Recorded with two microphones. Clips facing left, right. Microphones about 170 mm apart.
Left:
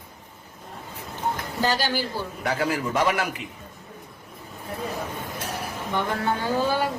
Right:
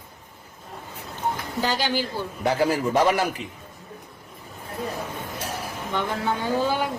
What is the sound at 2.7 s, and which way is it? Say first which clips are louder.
Speech: right 3 dB; 30° right (ahead or behind).